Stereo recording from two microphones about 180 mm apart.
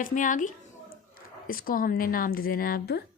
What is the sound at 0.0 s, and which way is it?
A woman's voice, 45° left (ahead or behind).